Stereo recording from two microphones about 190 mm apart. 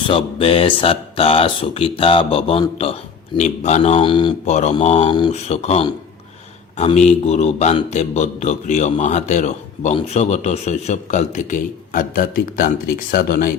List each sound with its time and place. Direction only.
0.1 s a man's voice: 30° left (ahead or behind); by 13.5 s 50° left (ahead or behind)